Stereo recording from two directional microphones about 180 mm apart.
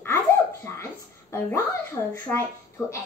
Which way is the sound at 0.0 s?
15° left (ahead or behind).